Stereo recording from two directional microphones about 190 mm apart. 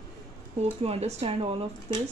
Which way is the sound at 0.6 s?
35° right (ahead or behind).